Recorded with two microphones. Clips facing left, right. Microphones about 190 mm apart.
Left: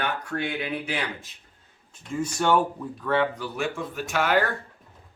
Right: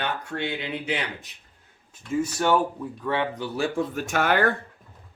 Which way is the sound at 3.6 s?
40° right (ahead or behind).